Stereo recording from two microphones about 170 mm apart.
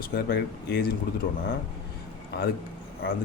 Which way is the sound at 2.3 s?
75° left (ahead or behind).